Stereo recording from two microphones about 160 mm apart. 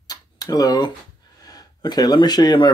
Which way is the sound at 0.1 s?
25° left (ahead or behind).